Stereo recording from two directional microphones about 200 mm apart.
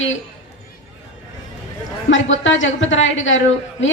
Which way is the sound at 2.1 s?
70° left (ahead or behind).